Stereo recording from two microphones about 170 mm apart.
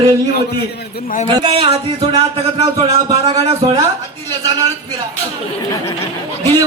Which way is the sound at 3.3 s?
35° right (ahead or behind).